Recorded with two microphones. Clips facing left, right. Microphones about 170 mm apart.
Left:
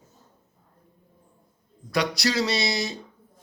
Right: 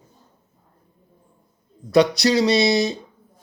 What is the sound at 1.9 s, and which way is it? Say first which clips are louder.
Speech: right 9 dB; 20° right (ahead or behind).